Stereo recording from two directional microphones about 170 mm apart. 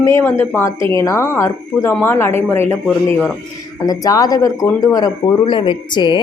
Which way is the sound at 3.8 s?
20° left (ahead or behind).